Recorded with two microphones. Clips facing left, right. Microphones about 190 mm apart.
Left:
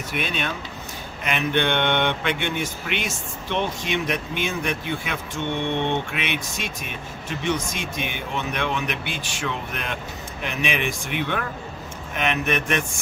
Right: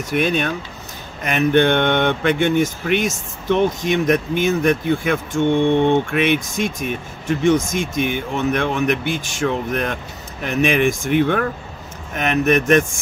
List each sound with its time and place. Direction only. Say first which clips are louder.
0.1 s speech: right 9 dB; 45° right (ahead or behind)